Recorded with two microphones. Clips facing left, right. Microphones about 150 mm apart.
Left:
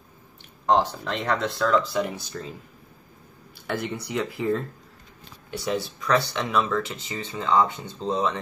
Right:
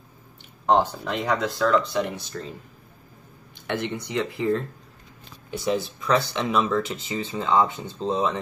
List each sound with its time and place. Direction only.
0.7 s speech: 10° right (ahead or behind)
3.5 s speech: centre (ahead or behind)
5.7 s speech: 5° right (ahead or behind)